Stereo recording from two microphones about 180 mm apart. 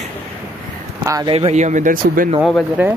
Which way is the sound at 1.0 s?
20° right (ahead or behind).